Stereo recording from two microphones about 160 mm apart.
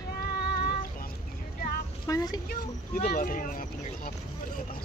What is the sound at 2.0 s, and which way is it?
Speech, 25° left (ahead or behind).